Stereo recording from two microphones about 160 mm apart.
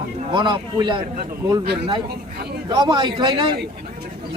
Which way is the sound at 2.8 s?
25° right (ahead or behind).